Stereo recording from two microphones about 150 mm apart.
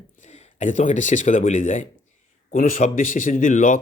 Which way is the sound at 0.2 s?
50° left (ahead or behind).